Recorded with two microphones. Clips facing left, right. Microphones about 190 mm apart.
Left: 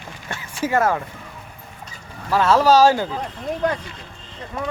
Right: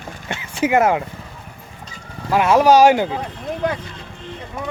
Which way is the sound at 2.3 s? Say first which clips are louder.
Right 2 dB; 15° right (ahead or behind).